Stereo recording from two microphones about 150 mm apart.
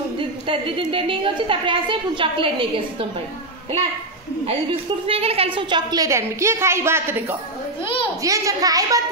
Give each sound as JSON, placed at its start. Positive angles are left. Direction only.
{"t": 0.2, "sound": "a woman's voice", "side_deg": -35}
{"t": 5.0, "sound": "a woman's voice", "side_deg": -40}